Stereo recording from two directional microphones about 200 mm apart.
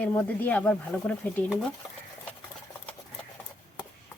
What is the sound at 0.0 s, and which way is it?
Speech, 10° left (ahead or behind).